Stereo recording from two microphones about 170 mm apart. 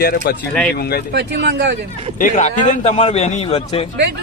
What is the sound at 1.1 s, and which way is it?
Speech, 85° right.